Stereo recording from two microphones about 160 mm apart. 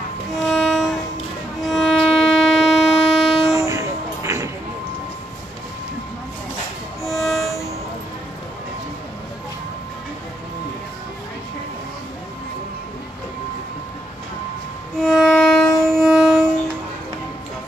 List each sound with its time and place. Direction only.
0.4 s train: centre (ahead or behind)
1.6 s violin: centre (ahead or behind)
3.6 s music: 20° right (ahead or behind)
7.1 s train: centre (ahead or behind)
15.0 s music: 5° right (ahead or behind)